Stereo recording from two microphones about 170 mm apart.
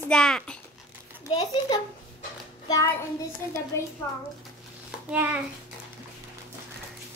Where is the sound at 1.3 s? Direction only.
25° left (ahead or behind).